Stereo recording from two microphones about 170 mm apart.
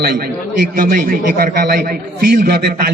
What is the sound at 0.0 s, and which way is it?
Speech, 65° right (ahead or behind).